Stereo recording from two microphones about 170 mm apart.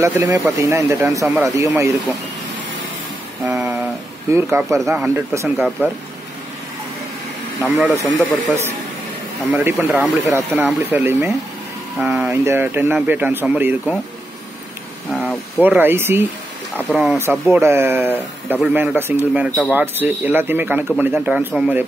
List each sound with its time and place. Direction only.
0.0 s speech: 15° right (ahead or behind)
3.4 s a sound: 10° right (ahead or behind)
4.3 s speech: 15° right (ahead or behind)
7.6 s speech: 10° right (ahead or behind)
15.0 s a sound: centre (ahead or behind)
15.6 s speech: 10° right (ahead or behind)
16.9 s speech: 5° right (ahead or behind)
17.2 s speech: 15° right (ahead or behind)